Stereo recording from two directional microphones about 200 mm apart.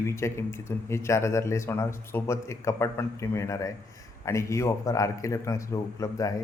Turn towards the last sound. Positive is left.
turn(degrees=15)  # may be behind; listen again after turning